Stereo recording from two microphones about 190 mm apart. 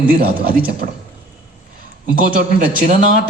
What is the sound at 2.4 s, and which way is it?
Speech, 50° right (ahead or behind).